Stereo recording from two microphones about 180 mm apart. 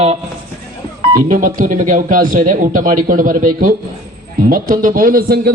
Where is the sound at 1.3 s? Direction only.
45° right (ahead or behind).